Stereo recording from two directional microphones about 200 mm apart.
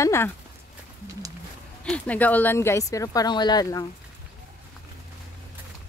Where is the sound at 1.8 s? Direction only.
5° left (ahead or behind).